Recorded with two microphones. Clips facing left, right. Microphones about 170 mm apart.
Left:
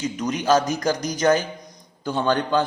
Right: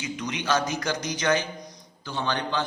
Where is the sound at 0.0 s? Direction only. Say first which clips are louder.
Left 7 dB; 45° left (ahead or behind).